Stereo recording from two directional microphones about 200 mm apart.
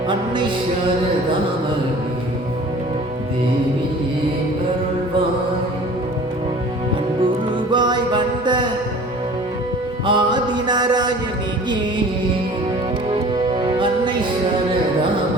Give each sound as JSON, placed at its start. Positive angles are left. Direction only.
{"t": 7.3, "sound": "music", "side_deg": -20}
{"t": 10.1, "sound": "mantra", "side_deg": -20}
{"t": 13.1, "sound": "music", "side_deg": -20}